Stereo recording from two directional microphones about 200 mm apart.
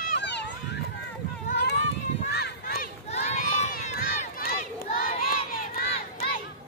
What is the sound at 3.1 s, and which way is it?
Crowd, 35° left (ahead or behind).